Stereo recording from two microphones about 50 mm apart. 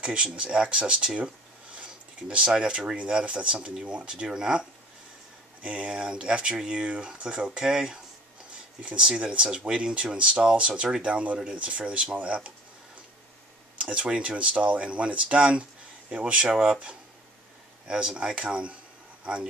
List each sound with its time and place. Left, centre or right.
0.0 s speech: right
13.7 s speech: right
17.8 s speech: centre